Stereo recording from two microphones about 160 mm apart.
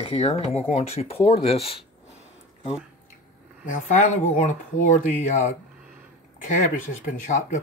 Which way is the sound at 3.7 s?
50° left (ahead or behind).